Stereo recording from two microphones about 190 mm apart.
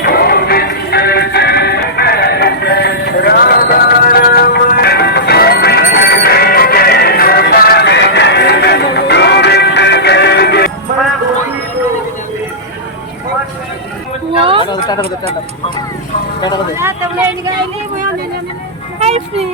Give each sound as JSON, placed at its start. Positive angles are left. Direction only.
{"t": 0.0, "sound": "music", "side_deg": 55}
{"t": 14.7, "sound": "a sound", "side_deg": 20}
{"t": 16.7, "sound": "vehicle", "side_deg": -10}
{"t": 18.9, "sound": "music", "side_deg": -35}